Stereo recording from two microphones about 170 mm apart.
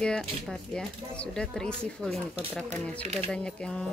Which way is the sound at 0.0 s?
5° left (ahead or behind).